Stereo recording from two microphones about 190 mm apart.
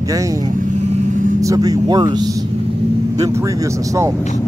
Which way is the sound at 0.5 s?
40° right (ahead or behind).